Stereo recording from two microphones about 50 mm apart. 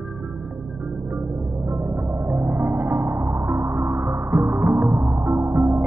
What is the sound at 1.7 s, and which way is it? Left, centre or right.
Music, right.